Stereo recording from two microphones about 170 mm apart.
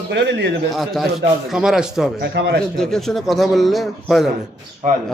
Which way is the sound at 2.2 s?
85° right.